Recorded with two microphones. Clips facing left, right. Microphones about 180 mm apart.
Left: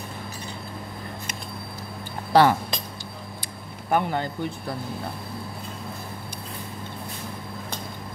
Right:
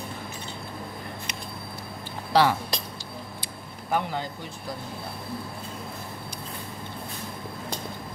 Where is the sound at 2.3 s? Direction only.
50° left (ahead or behind).